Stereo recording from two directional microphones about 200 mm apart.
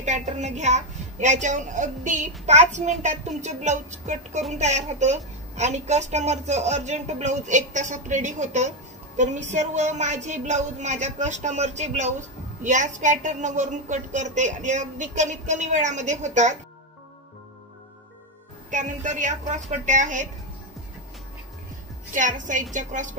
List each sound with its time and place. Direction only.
0.0 s speech: 35° right (ahead or behind)
18.7 s speech: 40° right (ahead or behind)
22.1 s speech: 40° right (ahead or behind)